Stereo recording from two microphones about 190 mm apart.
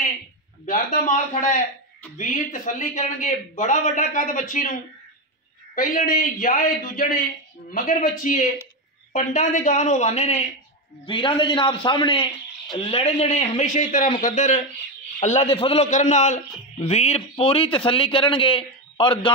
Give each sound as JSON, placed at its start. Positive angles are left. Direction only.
{"t": 0.7, "sound": "a man's voice", "side_deg": 45}
{"t": 5.8, "sound": "a man's voice", "side_deg": 45}